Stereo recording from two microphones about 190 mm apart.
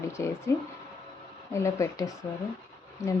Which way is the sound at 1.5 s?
15° left (ahead or behind).